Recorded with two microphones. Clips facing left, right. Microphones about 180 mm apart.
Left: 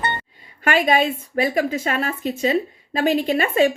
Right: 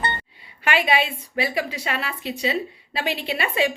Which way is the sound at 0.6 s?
45° left (ahead or behind).